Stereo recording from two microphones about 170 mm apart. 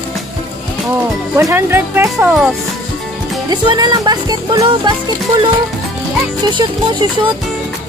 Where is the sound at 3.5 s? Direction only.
25° right (ahead or behind).